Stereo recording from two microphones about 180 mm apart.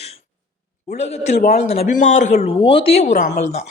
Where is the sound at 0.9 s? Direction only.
40° left (ahead or behind).